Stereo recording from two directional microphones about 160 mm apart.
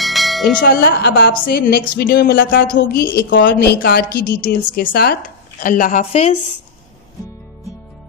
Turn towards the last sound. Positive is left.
turn(degrees=45)  # may be behind; listen again after turning